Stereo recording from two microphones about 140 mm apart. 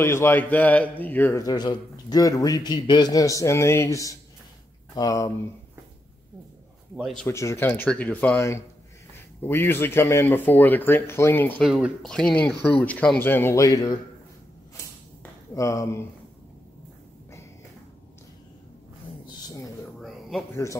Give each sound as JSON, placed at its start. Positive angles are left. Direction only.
{"t": 0.0, "sound": "speech", "side_deg": 20}
{"t": 1.4, "sound": "a man's voice", "side_deg": 30}
{"t": 7.2, "sound": "speech", "side_deg": 20}
{"t": 11.6, "sound": "speech", "side_deg": 0}
{"t": 15.5, "sound": "a man's voice", "side_deg": 20}
{"t": 19.2, "sound": "a sound", "side_deg": 25}
{"t": 20.0, "sound": "a sound", "side_deg": 0}